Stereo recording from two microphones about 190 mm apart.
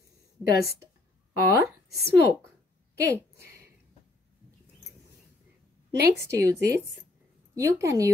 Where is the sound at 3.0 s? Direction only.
15° right (ahead or behind).